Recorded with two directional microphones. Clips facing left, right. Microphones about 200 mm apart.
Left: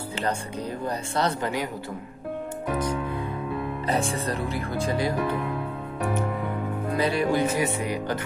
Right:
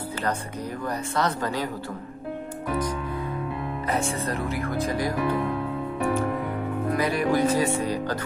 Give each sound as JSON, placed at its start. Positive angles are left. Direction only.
{"t": 0.8, "sound": "speech", "side_deg": 30}
{"t": 3.8, "sound": "speech", "side_deg": 35}
{"t": 6.9, "sound": "speech", "side_deg": 30}